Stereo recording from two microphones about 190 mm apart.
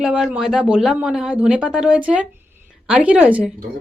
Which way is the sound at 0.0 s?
5° right (ahead or behind).